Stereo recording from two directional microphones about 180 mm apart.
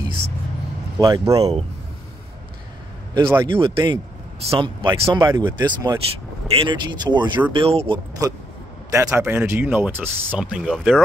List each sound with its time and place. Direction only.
0.9 s speech: 20° right (ahead or behind)
1.4 s speech: 35° right (ahead or behind)
3.2 s speech: 15° right (ahead or behind)
3.6 s speech: 25° right (ahead or behind)
8.2 s speech: 20° right (ahead or behind); by 11.0 s 5° right (ahead or behind)